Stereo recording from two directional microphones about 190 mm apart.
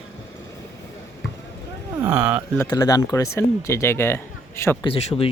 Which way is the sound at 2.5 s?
20° left (ahead or behind).